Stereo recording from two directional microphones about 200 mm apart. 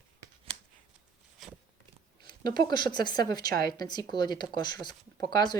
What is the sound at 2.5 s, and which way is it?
Speech, 20° left (ahead or behind).